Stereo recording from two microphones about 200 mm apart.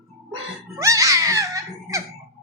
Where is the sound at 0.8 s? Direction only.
15° right (ahead or behind).